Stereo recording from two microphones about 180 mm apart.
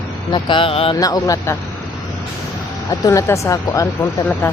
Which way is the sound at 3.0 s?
15° left (ahead or behind).